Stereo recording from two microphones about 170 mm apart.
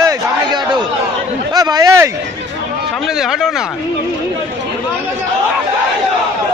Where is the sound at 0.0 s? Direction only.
25° right (ahead or behind).